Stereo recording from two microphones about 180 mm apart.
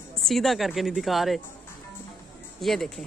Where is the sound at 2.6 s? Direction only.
Centre (ahead or behind).